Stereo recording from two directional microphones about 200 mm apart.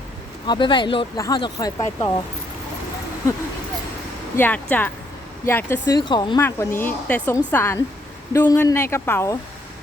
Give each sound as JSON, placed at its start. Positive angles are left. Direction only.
{"t": 0.4, "sound": "speech", "side_deg": 25}
{"t": 4.4, "sound": "speech", "side_deg": 10}
{"t": 6.0, "sound": "speech", "side_deg": 20}